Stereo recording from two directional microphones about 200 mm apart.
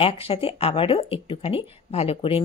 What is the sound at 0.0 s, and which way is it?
Speech, 30° left (ahead or behind).